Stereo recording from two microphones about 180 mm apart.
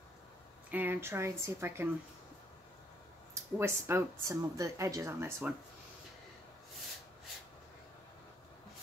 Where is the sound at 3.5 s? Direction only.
15° right (ahead or behind).